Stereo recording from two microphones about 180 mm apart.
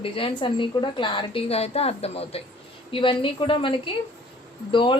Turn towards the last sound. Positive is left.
turn(degrees=30)  # may be behind; listen again after turning